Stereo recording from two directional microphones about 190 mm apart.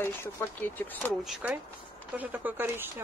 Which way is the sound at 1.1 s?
5° right (ahead or behind).